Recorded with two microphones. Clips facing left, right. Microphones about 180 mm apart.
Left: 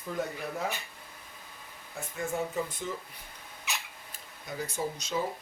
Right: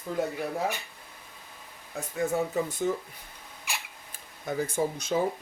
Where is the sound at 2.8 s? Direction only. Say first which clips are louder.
Right 9 dB; 55° right (ahead or behind).